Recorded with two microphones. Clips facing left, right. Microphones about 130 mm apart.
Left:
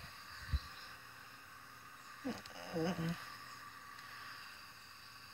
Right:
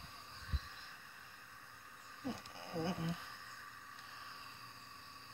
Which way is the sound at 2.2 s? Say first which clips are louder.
Left 1 dB; centre (ahead or behind).